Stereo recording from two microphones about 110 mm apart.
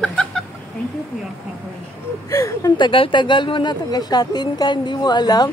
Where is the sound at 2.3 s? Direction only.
30° left (ahead or behind).